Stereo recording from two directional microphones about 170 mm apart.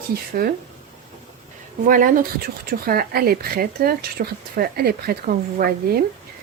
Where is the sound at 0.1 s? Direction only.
60° right (ahead or behind).